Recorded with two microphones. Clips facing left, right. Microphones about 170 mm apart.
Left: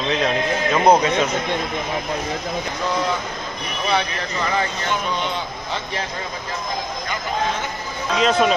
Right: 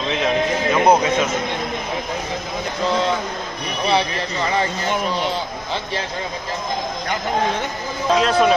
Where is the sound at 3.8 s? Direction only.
30° right (ahead or behind).